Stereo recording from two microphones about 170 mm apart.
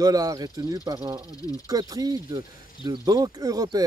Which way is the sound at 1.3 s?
20° left (ahead or behind).